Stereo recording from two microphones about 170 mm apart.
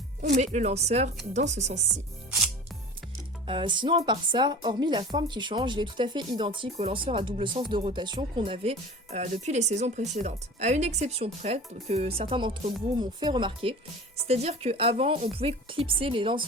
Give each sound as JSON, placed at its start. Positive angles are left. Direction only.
{"t": 0.3, "sound": "speech", "side_deg": -45}
{"t": 3.4, "sound": "a woman's voice", "side_deg": -30}